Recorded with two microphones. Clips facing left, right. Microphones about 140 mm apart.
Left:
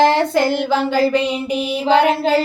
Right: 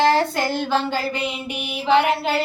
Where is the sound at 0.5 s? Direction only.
90° left.